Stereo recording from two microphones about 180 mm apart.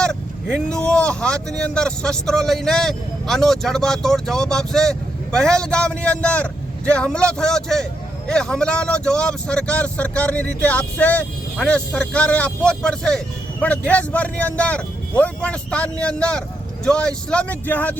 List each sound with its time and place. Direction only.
0.0 s speech: 5° left (ahead or behind)